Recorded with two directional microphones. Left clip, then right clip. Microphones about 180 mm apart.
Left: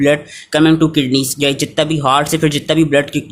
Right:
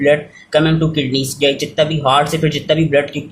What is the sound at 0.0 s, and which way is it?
Speech, 45° left (ahead or behind).